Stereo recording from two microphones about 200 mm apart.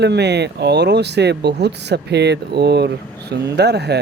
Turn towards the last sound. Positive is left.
turn(degrees=-55)  # may be behind; listen again after turning